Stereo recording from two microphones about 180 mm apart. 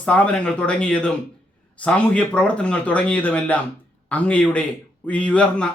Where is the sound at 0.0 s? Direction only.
5° left (ahead or behind).